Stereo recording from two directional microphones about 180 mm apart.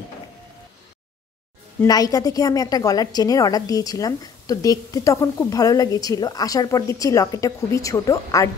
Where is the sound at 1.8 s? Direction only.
20° left (ahead or behind).